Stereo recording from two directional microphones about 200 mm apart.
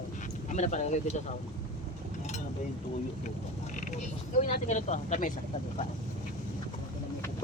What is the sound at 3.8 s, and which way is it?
Speech, 40° left (ahead or behind).